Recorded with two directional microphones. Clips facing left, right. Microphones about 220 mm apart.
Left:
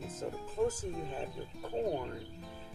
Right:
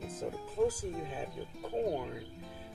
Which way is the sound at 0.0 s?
Centre (ahead or behind).